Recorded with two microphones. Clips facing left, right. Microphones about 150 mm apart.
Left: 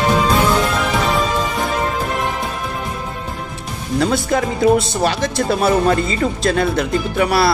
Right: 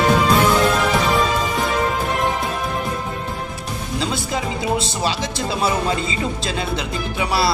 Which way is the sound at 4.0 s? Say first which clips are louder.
Left 8 dB; 55° left (ahead or behind).